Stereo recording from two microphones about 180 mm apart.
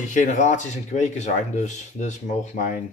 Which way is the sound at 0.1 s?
45° left (ahead or behind).